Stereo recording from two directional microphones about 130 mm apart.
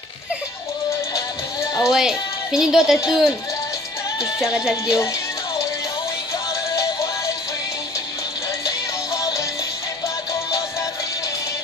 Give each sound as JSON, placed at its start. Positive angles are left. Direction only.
{"t": 1.8, "sound": "speech", "side_deg": -5}
{"t": 3.1, "sound": "music", "side_deg": -5}
{"t": 4.4, "sound": "music", "side_deg": -5}
{"t": 8.6, "sound": "music", "side_deg": 25}